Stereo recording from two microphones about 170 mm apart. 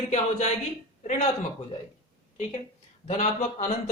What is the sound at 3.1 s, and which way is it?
Speech, 45° left (ahead or behind).